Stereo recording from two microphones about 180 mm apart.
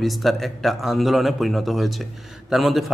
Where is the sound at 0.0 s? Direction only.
Centre (ahead or behind).